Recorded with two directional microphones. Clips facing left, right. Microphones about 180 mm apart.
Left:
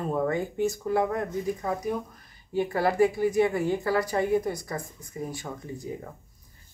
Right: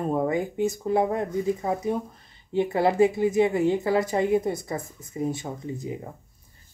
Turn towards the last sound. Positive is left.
turn(degrees=-20)  # may be behind; listen again after turning